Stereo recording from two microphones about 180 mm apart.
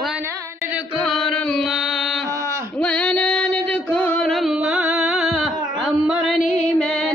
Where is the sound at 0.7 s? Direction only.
Centre (ahead or behind).